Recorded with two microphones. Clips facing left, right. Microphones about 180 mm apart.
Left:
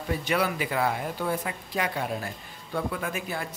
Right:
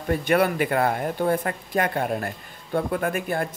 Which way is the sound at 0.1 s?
55° right (ahead or behind).